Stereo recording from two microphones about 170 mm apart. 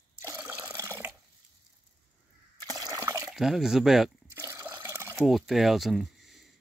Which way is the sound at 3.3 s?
Centre (ahead or behind).